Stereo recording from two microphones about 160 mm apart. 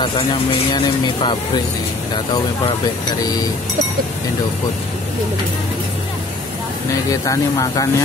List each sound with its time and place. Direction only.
7.1 s speech: 20° left (ahead or behind)